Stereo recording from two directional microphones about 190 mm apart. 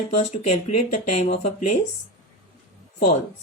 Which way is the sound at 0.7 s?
35° left (ahead or behind).